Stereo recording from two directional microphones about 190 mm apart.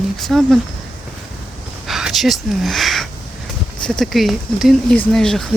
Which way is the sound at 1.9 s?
Centre (ahead or behind).